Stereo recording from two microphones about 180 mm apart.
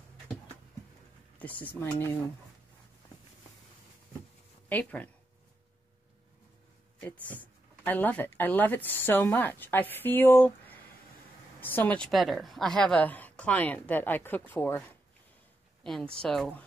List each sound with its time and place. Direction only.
1.4 s speech: 10° left (ahead or behind)
4.6 s speech: 10° left (ahead or behind)
7.3 s speech: 10° left (ahead or behind)
15.8 s speech: centre (ahead or behind)